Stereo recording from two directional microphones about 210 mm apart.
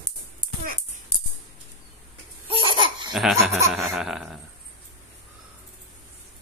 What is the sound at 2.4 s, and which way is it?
Laughter, 25° right (ahead or behind).